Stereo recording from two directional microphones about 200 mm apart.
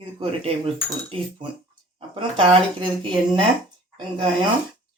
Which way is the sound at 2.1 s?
25° right (ahead or behind).